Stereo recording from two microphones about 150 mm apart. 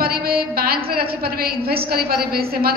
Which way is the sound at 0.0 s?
90° right.